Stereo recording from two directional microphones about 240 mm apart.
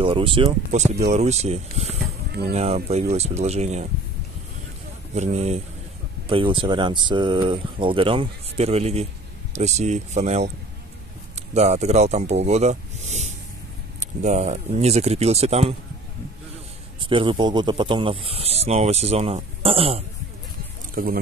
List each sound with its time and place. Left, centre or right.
0.0 s speech: right
5.1 s speech: right
11.5 s speech: right
17.0 s speech: right
20.9 s speech: right